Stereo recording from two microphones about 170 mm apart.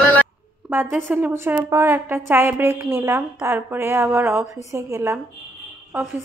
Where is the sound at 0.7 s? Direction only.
10° right (ahead or behind).